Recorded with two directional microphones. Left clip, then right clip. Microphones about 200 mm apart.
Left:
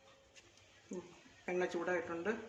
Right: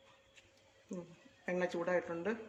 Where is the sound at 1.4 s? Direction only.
30° right (ahead or behind).